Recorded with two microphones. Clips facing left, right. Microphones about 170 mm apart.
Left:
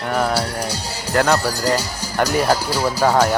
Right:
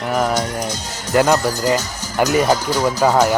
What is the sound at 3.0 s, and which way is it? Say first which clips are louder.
Speech: right 1 dB; 10° right (ahead or behind).